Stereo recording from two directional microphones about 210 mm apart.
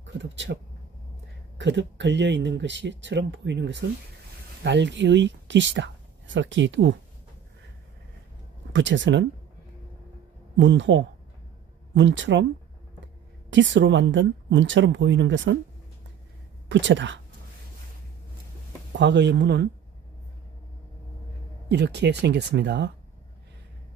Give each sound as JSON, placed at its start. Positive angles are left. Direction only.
{"t": 0.0, "sound": "speech", "side_deg": -60}
{"t": 1.6, "sound": "speech", "side_deg": -60}
{"t": 8.7, "sound": "speech", "side_deg": -60}
{"t": 10.6, "sound": "speech", "side_deg": -60}
{"t": 13.5, "sound": "speech", "side_deg": -60}
{"t": 16.6, "sound": "speech", "side_deg": -60}
{"t": 18.9, "sound": "speech", "side_deg": -55}
{"t": 21.6, "sound": "speech", "side_deg": -55}